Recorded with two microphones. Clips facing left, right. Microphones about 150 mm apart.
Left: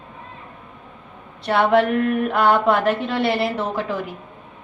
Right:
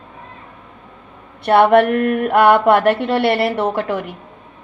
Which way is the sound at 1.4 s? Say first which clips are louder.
Right 5 dB; 60° right (ahead or behind).